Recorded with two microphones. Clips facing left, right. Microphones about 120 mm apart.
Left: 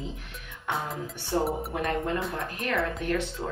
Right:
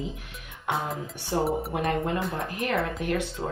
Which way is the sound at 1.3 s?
10° right (ahead or behind).